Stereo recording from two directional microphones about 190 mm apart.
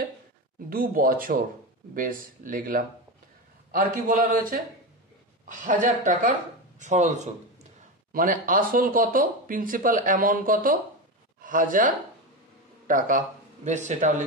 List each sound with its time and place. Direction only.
0.7 s speech: 50° right (ahead or behind)